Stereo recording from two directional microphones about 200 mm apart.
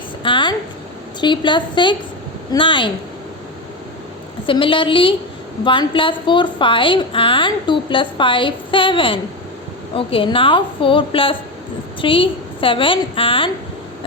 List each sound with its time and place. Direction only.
0.2 s a sound: 25° left (ahead or behind)
1.2 s a woman's voice: 25° left (ahead or behind)
4.4 s a woman's voice: 25° left (ahead or behind)